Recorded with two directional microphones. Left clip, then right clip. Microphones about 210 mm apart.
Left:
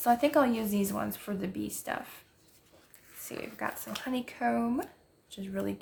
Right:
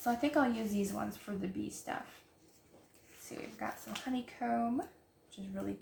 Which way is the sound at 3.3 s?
50° left (ahead or behind).